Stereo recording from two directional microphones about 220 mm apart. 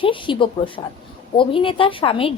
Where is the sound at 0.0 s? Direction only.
20° left (ahead or behind).